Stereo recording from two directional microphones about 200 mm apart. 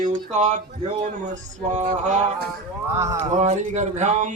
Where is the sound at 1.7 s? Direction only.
35° right (ahead or behind).